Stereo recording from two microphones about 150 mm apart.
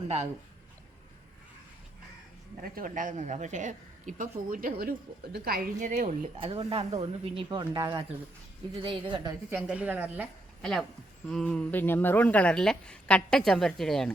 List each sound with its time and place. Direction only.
2.6 s speech: 70° right (ahead or behind)
4.8 s a woman's voice: 90° right; by 6.1 s 65° right (ahead or behind)
6.4 s speech: 40° right (ahead or behind)
7.5 s speech: 30° right (ahead or behind)
9.5 s a woman's voice: 10° right (ahead or behind)
10.6 s a woman's voice: 5° left (ahead or behind)